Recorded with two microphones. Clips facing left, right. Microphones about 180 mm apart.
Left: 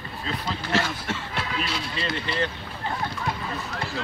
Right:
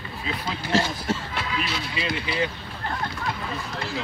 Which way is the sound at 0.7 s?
35° right (ahead or behind).